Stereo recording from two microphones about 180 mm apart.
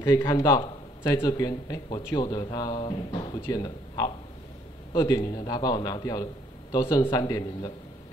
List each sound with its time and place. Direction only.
0.0 s speech: 20° left (ahead or behind)